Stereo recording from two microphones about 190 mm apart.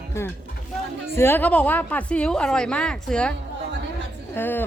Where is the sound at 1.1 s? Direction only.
10° left (ahead or behind).